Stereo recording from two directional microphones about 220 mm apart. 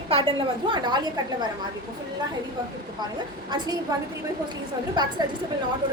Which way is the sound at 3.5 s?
20° right (ahead or behind).